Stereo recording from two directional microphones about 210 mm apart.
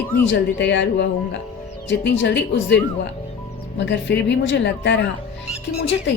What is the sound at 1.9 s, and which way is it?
Speech, 60° left (ahead or behind).